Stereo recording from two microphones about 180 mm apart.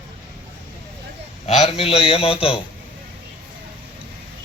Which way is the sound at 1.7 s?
30° left (ahead or behind).